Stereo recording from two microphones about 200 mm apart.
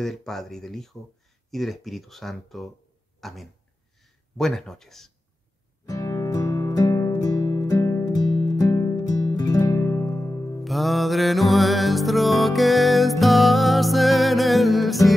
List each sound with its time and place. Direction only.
0.0 s speech: centre (ahead or behind)
5.9 s music: 15° left (ahead or behind)
10.6 s music: centre (ahead or behind)